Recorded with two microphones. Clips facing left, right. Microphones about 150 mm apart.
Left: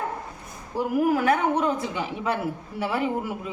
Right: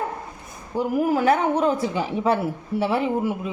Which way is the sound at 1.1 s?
30° right (ahead or behind).